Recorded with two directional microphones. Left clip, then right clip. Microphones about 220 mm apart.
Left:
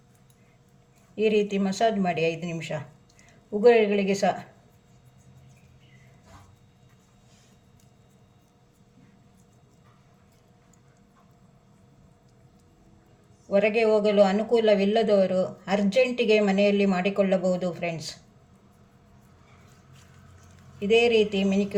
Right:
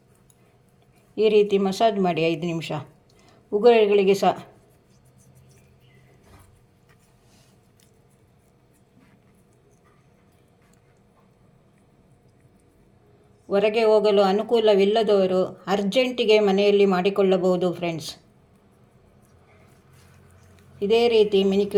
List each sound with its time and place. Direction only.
1.1 s speech: 30° right (ahead or behind)
13.5 s speech: 30° right (ahead or behind)
20.9 s speech: 30° right (ahead or behind)